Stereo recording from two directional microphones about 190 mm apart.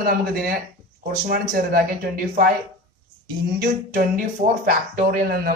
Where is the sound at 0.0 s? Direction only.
50° right (ahead or behind).